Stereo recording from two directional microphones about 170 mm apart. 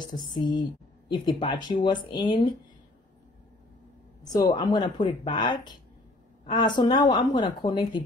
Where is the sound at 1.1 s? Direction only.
30° left (ahead or behind).